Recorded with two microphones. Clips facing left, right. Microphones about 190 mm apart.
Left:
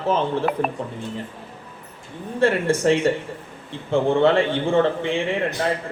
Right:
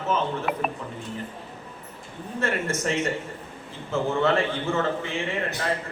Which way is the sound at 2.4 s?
30° left (ahead or behind).